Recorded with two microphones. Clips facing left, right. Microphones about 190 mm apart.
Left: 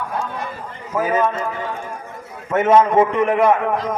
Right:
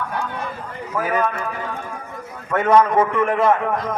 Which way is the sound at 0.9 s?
20° left (ahead or behind).